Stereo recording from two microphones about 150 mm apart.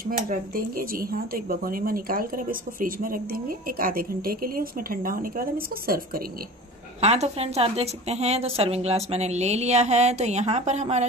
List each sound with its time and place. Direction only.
0.0 s speech: 75° right (ahead or behind)
7.0 s a woman's voice: 45° right (ahead or behind)